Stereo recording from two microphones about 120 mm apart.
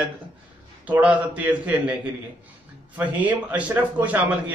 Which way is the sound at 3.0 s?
10° right (ahead or behind).